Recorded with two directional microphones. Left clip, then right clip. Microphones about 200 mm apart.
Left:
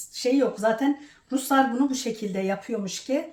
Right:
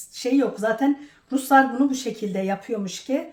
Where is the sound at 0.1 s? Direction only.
5° right (ahead or behind).